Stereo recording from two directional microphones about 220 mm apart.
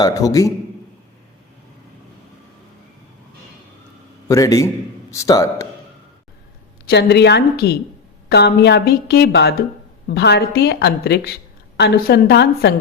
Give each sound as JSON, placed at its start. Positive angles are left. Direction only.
{"t": 0.0, "sound": "a man's voice", "side_deg": 15}
{"t": 4.3, "sound": "a man's voice", "side_deg": 15}
{"t": 6.8, "sound": "a woman's voice", "side_deg": 50}